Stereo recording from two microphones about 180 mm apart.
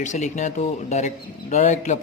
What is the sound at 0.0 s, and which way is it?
Speech, 40° left (ahead or behind).